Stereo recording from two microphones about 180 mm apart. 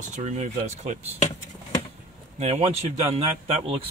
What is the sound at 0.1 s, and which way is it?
Speech, 40° right (ahead or behind).